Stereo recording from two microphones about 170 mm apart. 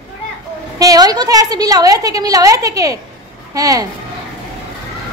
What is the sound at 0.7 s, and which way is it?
A woman's voice, 20° right (ahead or behind).